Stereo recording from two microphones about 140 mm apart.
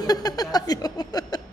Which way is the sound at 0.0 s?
30° left (ahead or behind).